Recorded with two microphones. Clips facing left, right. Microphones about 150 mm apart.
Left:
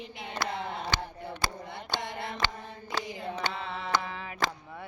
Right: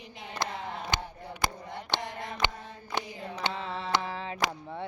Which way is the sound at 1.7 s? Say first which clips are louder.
Right 1 dB; 85° left.